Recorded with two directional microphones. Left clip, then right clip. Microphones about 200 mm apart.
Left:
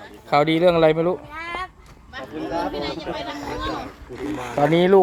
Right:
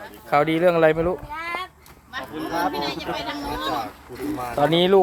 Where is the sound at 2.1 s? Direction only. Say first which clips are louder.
Even; 55° right (ahead or behind).